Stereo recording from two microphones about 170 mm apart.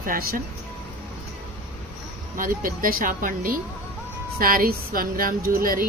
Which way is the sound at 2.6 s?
55° right (ahead or behind).